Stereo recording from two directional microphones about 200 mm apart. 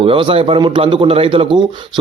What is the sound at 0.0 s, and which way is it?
A man's voice, 25° right (ahead or behind).